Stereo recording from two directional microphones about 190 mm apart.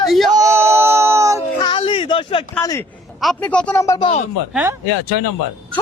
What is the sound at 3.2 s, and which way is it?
Speech, 5° left (ahead or behind).